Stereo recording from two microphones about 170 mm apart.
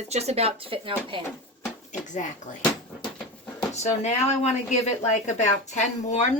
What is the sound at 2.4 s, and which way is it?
Speech, 45° left (ahead or behind).